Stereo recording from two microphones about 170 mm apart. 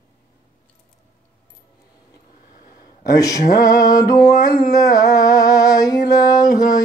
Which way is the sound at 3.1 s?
20° left (ahead or behind).